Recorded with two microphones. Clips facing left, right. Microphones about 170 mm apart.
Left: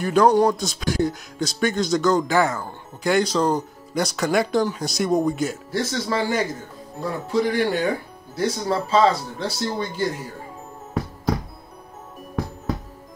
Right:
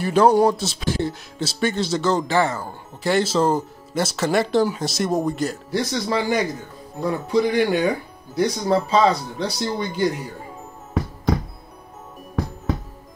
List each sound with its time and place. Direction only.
0.0 s speech: 5° right (ahead or behind)
5.7 s speech: 15° right (ahead or behind)